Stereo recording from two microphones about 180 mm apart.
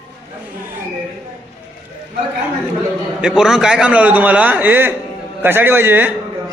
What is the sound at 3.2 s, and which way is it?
A man's voice, 5° right (ahead or behind).